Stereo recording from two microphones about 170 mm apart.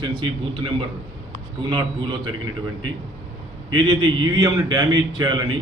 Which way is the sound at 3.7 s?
25° right (ahead or behind).